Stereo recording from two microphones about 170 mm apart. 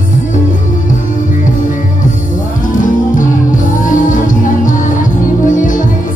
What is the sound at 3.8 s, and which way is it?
Music, 50° left (ahead or behind).